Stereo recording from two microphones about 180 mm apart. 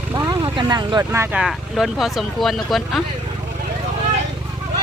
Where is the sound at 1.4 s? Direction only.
Centre (ahead or behind).